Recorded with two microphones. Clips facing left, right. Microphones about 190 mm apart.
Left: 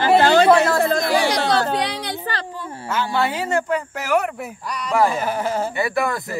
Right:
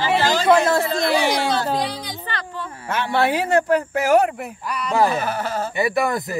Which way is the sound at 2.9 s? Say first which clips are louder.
Right 2 dB; 60° right (ahead or behind).